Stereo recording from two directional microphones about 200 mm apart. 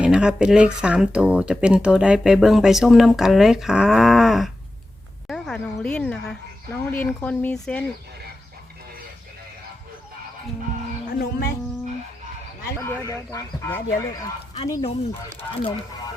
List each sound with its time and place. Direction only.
0.0 s speech: 5° right (ahead or behind)
11.1 s speech: 50° left (ahead or behind)
12.8 s speech: 15° left (ahead or behind)
14.7 s speech: 25° left (ahead or behind)